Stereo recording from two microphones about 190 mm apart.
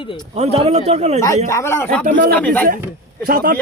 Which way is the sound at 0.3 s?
35° right (ahead or behind).